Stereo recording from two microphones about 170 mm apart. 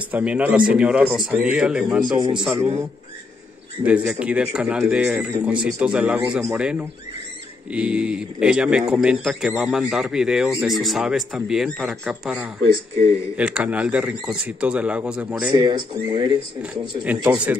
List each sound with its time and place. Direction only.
0.1 s a man's voice: 10° right (ahead or behind)
3.8 s a man's voice: 5° right (ahead or behind)
15.5 s speech: 25° right (ahead or behind)
17.0 s a man's voice: 10° right (ahead or behind)